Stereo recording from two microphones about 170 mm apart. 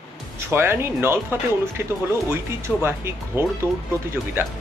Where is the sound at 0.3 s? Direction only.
15° right (ahead or behind).